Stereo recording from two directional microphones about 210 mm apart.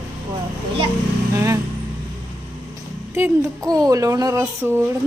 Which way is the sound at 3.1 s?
10° right (ahead or behind).